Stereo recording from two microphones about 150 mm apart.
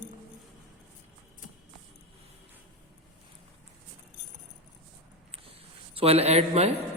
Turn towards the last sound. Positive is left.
turn(degrees=-45)  # may be behind; listen again after turning